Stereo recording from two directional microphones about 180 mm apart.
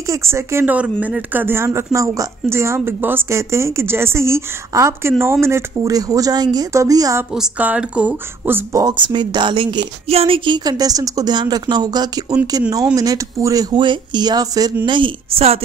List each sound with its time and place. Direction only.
0.1 s speech: 15° right (ahead or behind)
7.3 s speech: 5° right (ahead or behind)
8.8 s a woman's voice: 25° right (ahead or behind)